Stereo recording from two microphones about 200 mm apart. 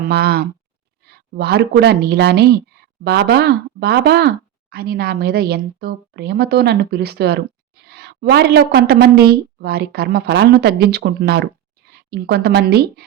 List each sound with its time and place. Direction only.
0.1 s a woman's voice: 50° right (ahead or behind)